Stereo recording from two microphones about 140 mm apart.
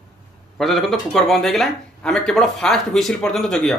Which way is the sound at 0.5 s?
Centre (ahead or behind).